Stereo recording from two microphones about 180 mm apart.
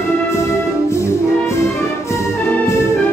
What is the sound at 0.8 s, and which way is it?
Music, 15° left (ahead or behind).